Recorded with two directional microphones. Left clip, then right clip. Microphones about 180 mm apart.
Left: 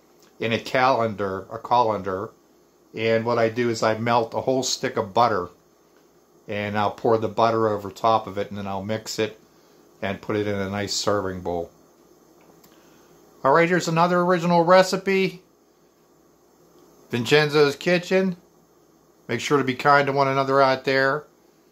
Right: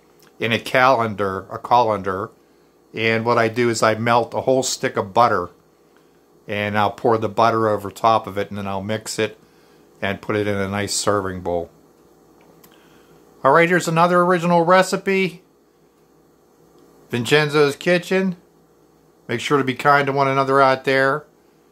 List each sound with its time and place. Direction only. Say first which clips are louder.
0.4 s speech: right 5 dB; 15° right (ahead or behind)
13.4 s speech: right 4 dB; 15° right (ahead or behind)
17.1 s speech: right 2 dB; 10° right (ahead or behind)